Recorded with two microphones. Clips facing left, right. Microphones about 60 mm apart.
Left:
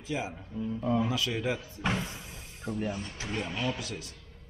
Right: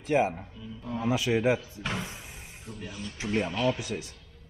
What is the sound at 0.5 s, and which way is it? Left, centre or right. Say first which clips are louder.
Speech: left 8 dB; left.